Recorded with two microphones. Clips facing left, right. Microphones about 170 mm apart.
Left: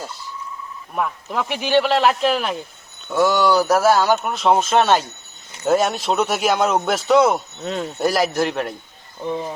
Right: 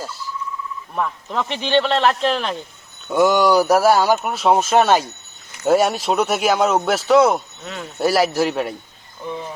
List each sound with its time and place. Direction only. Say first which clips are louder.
0.9 s speech: even; 5° left (ahead or behind)
3.1 s speech: right 2 dB; 15° right (ahead or behind)
7.6 s speech: left 6 dB; 30° left (ahead or behind)
7.9 s speech: right 3 dB; 5° right (ahead or behind)
9.2 s cricket: left 4 dB; 25° left (ahead or behind)